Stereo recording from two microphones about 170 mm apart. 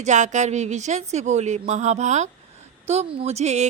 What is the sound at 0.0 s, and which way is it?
A woman's voice, 45° right (ahead or behind).